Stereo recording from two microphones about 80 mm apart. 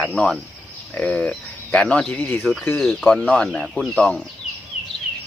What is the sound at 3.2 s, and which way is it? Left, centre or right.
Speech, centre.